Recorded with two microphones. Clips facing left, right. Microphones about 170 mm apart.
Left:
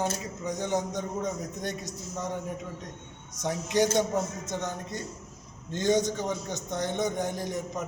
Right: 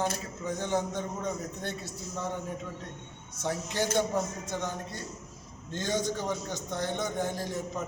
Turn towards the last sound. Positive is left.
turn(degrees=20)  # may be behind; listen again after turning